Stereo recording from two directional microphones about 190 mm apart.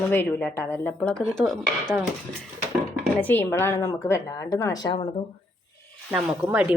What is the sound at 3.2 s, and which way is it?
Speech, 10° left (ahead or behind).